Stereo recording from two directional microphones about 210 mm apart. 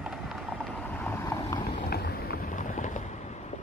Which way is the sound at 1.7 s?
45° left (ahead or behind).